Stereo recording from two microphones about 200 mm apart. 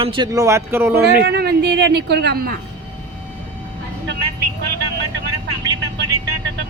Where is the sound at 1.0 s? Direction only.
60° right (ahead or behind).